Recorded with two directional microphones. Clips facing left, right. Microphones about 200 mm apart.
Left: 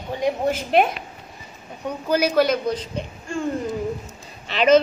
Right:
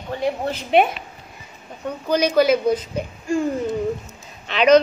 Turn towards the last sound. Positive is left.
turn(degrees=5)  # may be behind; listen again after turning